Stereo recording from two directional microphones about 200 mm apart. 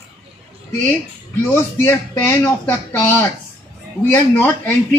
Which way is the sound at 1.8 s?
10° left (ahead or behind).